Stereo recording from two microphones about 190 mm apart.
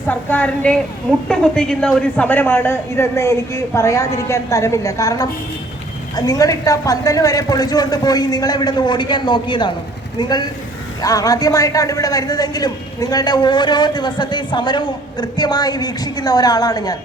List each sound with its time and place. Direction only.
0.1 s a woman's voice: 10° left (ahead or behind)